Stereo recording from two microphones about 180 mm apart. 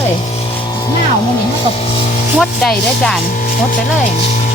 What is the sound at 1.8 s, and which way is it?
Speech, 35° left (ahead or behind).